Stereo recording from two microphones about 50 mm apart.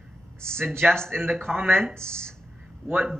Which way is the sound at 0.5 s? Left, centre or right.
Right.